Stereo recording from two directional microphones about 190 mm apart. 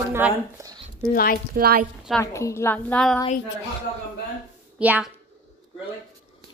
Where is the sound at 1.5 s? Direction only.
50° right (ahead or behind).